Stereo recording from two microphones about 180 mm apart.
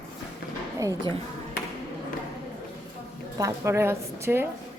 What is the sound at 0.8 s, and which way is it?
Speech, 20° right (ahead or behind).